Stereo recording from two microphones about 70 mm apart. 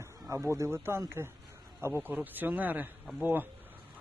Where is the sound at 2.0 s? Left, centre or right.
Right.